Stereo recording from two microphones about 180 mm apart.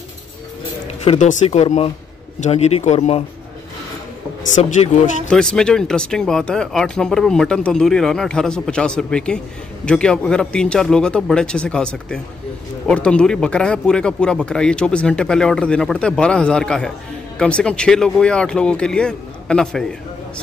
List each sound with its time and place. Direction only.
1.0 s speech: 40° left (ahead or behind)
4.6 s speech: 45° left (ahead or behind)
5.3 s speech: 5° left (ahead or behind)